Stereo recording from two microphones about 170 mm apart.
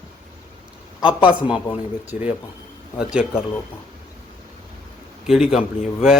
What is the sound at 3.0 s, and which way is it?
Speech, 5° right (ahead or behind).